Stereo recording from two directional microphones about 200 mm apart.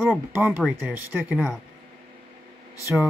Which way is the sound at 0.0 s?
10° right (ahead or behind).